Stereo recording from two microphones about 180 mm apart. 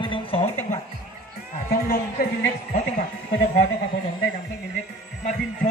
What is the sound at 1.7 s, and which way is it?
A woman's voice, 60° left (ahead or behind).